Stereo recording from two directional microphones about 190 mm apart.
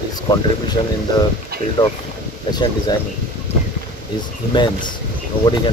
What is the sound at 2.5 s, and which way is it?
Speech, 20° left (ahead or behind).